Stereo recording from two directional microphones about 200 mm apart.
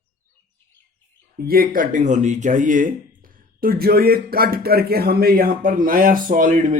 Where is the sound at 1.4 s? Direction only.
50° right (ahead or behind).